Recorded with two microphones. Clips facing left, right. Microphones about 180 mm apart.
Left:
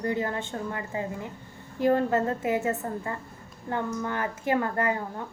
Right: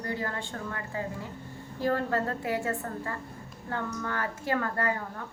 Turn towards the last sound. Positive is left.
turn(degrees=20)  # may be behind; listen again after turning